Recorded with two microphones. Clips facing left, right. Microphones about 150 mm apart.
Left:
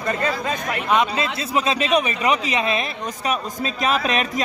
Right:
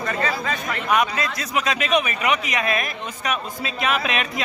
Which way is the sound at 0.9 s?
25° left (ahead or behind).